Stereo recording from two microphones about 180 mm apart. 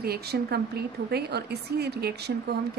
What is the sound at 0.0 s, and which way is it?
Speech, 60° right (ahead or behind).